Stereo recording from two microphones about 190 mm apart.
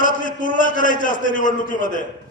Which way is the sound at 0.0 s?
45° left (ahead or behind).